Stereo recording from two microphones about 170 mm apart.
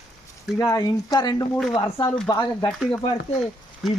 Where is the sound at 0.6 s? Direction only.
20° left (ahead or behind).